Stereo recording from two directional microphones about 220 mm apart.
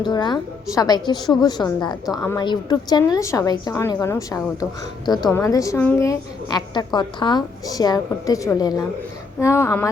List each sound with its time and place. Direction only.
0.0 s a woman's voice: 20° left (ahead or behind)